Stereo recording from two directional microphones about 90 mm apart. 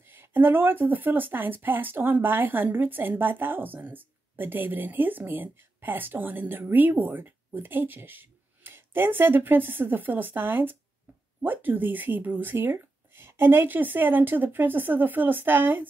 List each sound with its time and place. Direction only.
0.0 s speech: 25° right (ahead or behind)